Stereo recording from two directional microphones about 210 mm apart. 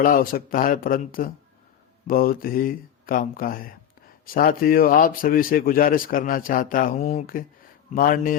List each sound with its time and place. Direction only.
0.0 s speech: 40° left (ahead or behind)